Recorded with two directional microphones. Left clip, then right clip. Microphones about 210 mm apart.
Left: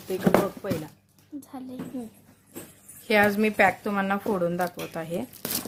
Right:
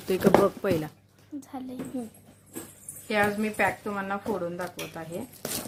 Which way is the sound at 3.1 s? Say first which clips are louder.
Left 5 dB; 50° left (ahead or behind).